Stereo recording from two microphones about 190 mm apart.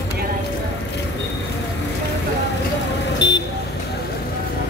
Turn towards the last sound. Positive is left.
turn(degrees=70)  # may be behind; listen again after turning